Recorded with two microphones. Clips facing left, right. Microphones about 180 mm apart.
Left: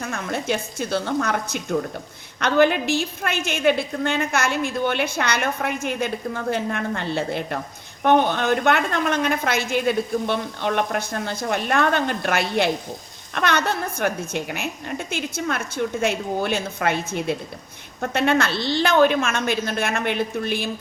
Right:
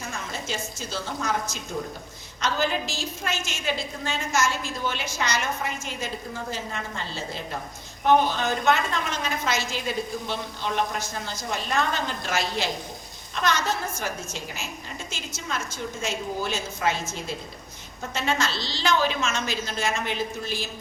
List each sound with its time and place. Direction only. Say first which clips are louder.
0.0 s a woman's voice: left 7 dB; 60° left (ahead or behind)